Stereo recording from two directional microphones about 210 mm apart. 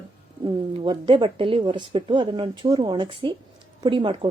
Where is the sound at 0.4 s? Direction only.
25° right (ahead or behind).